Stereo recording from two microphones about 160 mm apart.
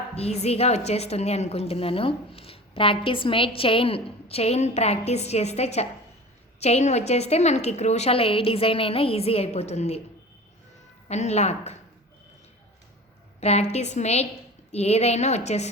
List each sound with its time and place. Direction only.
0.1 s a woman's voice: 40° left (ahead or behind)
11.1 s a woman's voice: 45° left (ahead or behind)
13.4 s a woman's voice: 40° left (ahead or behind)